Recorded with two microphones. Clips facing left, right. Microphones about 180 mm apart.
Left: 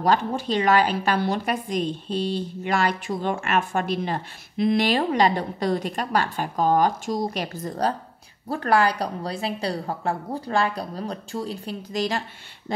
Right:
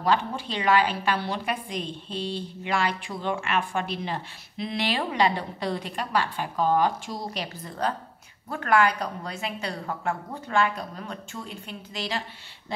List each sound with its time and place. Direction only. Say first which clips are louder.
0.0 s a woman's voice: left 3 dB; 45° left (ahead or behind)